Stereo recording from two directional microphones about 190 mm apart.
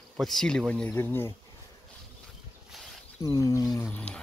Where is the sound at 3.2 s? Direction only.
20° left (ahead or behind).